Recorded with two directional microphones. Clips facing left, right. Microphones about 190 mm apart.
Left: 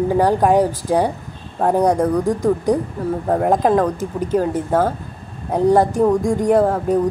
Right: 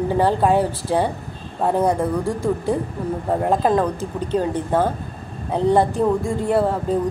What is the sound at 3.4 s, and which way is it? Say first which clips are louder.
Speech: left 2 dB; 15° left (ahead or behind).